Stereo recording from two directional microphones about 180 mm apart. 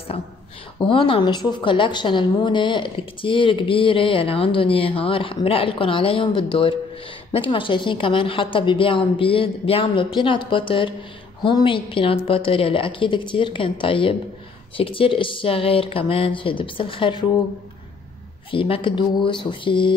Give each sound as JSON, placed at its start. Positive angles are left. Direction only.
{"t": 0.1, "sound": "a woman's voice", "side_deg": 35}
{"t": 18.5, "sound": "a woman's voice", "side_deg": 30}